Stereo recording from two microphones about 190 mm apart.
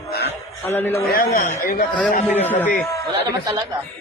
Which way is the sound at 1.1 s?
50° left (ahead or behind).